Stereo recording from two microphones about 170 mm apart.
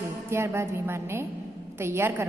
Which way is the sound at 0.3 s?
15° right (ahead or behind).